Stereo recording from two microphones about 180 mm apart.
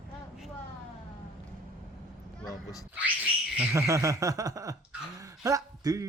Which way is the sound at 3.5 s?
10° right (ahead or behind).